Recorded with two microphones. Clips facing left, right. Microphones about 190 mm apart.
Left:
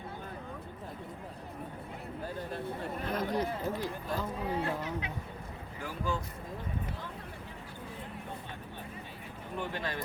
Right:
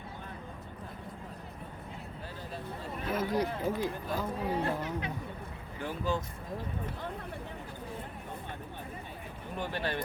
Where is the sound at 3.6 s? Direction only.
15° right (ahead or behind).